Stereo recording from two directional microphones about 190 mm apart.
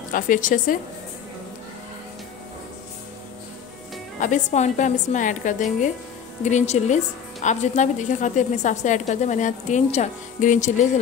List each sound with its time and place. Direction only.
0.1 s speech: 45° left (ahead or behind)
4.2 s a woman's voice: 40° left (ahead or behind)